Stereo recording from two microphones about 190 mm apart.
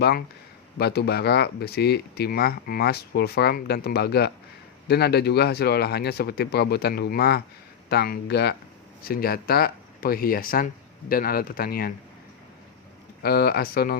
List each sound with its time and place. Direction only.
0.8 s speech: 60° left (ahead or behind)
13.2 s speech: 55° left (ahead or behind)